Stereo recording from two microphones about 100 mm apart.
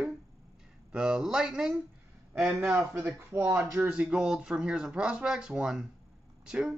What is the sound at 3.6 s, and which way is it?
Speech, 15° right (ahead or behind).